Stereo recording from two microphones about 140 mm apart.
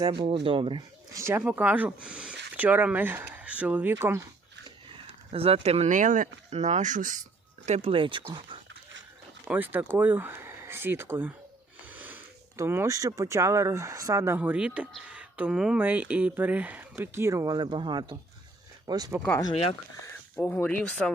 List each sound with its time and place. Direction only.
0.1 s speech: 40° right (ahead or behind)
1.1 s speech: 20° right (ahead or behind)
5.3 s speech: 45° right (ahead or behind); by 6.2 s 65° right (ahead or behind)
6.5 s speech: 55° right (ahead or behind)
7.6 s speech: 50° right (ahead or behind)
9.4 s speech: 10° right (ahead or behind); by 19.1 s 30° right (ahead or behind)
20.3 s speech: 15° left (ahead or behind)